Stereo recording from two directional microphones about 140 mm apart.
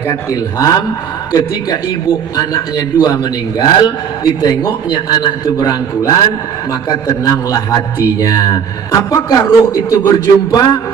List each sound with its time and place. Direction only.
0.1 s a man's voice: 25° left (ahead or behind)